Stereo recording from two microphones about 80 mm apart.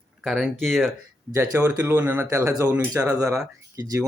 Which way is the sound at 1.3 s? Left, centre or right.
Right.